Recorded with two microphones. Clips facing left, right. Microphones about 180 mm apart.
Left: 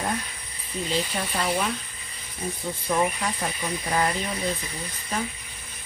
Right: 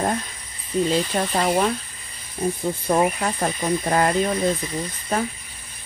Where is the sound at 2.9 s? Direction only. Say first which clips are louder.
Right 4 dB; 50° right (ahead or behind).